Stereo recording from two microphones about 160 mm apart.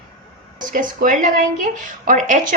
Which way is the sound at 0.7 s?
55° right (ahead or behind).